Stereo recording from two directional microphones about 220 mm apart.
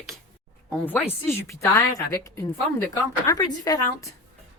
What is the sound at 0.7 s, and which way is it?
A woman's voice, 10° left (ahead or behind).